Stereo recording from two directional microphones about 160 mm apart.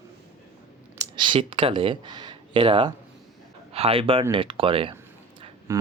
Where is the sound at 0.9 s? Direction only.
30° right (ahead or behind).